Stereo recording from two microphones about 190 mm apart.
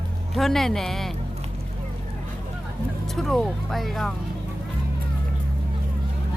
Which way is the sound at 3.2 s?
Centre (ahead or behind).